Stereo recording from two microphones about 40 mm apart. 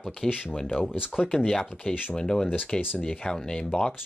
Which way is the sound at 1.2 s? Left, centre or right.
Centre.